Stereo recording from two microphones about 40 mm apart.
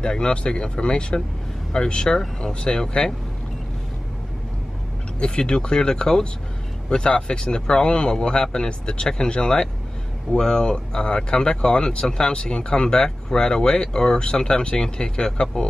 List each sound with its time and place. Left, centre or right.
0.0 s speech: left
5.2 s speech: left